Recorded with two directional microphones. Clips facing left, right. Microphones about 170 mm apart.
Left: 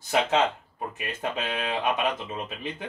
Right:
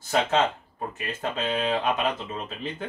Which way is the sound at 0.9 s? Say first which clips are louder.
Right 1 dB; 15° left (ahead or behind).